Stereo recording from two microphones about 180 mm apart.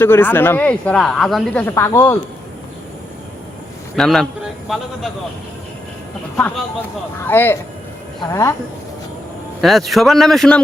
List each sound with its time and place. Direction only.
0.0 s speech: 10° left (ahead or behind)
1.6 s speech: 15° left (ahead or behind)
3.9 s a man's voice: centre (ahead or behind)
7.2 s speech: 10° left (ahead or behind)
9.6 s a man's voice: centre (ahead or behind)